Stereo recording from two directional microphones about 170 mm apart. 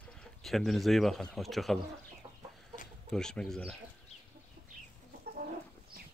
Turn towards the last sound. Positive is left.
turn(degrees=-65)  # may be behind; listen again after turning